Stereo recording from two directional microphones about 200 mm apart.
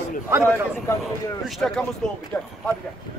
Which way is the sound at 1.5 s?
Centre (ahead or behind).